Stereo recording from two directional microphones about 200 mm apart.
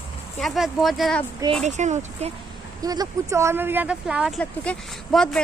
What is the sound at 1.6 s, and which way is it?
Speech, 35° right (ahead or behind).